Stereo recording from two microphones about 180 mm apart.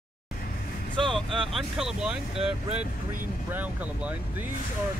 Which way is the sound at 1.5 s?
Centre (ahead or behind).